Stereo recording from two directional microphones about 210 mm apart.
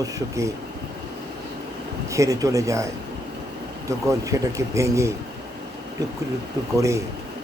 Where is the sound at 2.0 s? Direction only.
15° right (ahead or behind).